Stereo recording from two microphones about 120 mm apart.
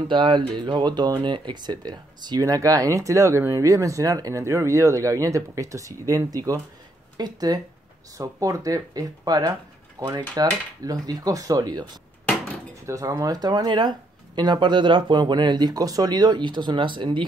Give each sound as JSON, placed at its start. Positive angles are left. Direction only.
{"t": 0.1, "sound": "speech", "side_deg": -40}